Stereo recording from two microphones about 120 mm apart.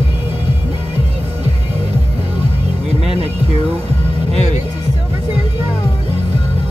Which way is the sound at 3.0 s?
60° right (ahead or behind).